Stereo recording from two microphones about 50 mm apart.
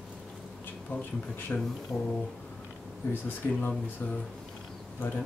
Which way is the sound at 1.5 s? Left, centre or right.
Left.